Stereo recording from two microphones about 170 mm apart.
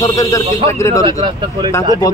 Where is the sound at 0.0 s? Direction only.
20° left (ahead or behind).